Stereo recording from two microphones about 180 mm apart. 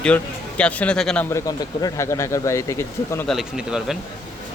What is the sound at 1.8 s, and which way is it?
Speech, 15° left (ahead or behind).